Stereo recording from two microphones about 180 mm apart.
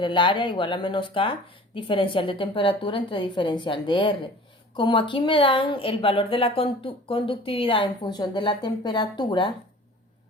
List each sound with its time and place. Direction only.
0.0 s a woman's voice: 25° left (ahead or behind)